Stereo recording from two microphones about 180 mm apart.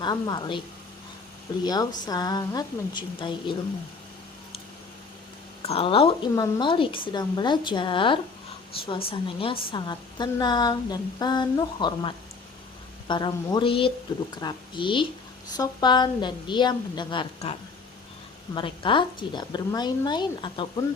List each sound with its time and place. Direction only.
0.0 s a woman's voice: 25° left (ahead or behind)
1.6 s a woman's voice: 20° left (ahead or behind)
5.6 s a woman's voice: 30° left (ahead or behind)
18.5 s a woman's voice: 30° left (ahead or behind)